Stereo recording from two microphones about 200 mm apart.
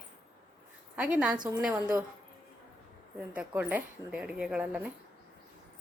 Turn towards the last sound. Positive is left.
turn(degrees=-5)  # may be behind; listen again after turning